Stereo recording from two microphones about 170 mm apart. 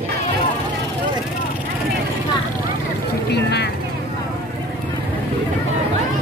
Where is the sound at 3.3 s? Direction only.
75° left (ahead or behind).